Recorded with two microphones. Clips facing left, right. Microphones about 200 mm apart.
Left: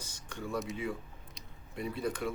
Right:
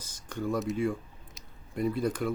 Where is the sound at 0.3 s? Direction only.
45° right (ahead or behind).